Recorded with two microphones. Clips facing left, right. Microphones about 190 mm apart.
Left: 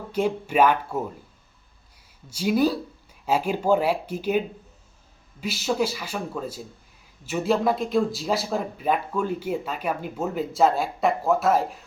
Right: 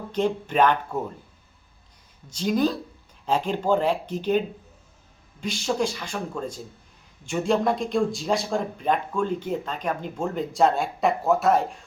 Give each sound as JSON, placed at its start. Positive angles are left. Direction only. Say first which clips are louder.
{"t": 0.1, "sound": "speech", "louder": "left 1 dB", "side_deg": 10}
{"t": 2.3, "sound": "speech", "louder": "left 1 dB", "side_deg": 10}